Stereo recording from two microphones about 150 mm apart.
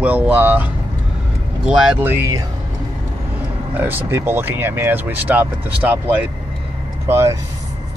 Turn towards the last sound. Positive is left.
turn(degrees=-15)  # may be behind; listen again after turning